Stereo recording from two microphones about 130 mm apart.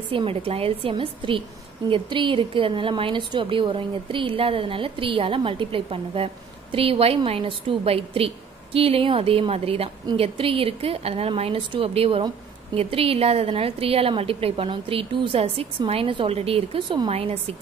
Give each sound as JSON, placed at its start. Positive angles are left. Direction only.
{"t": 0.1, "sound": "a woman's voice", "side_deg": -45}